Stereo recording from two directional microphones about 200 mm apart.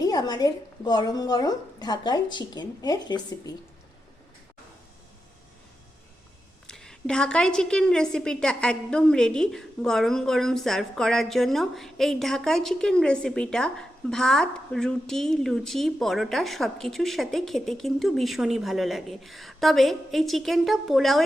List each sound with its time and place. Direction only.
0.0 s speech: 20° left (ahead or behind)
6.7 s a woman's voice: 5° left (ahead or behind)